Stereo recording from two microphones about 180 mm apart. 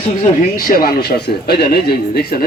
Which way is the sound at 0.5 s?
55° left (ahead or behind).